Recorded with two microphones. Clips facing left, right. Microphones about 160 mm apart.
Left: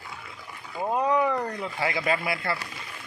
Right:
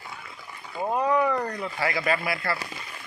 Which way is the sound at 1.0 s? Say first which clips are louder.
Right 1 dB; 20° left (ahead or behind).